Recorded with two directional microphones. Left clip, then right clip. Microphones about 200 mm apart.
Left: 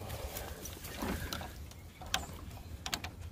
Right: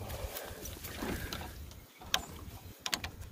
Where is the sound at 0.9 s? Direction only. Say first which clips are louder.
Even; 50° left (ahead or behind).